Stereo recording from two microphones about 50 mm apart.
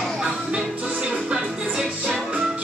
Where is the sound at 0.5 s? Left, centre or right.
Centre.